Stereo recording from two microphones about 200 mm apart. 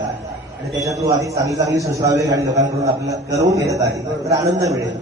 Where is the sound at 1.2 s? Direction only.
15° right (ahead or behind).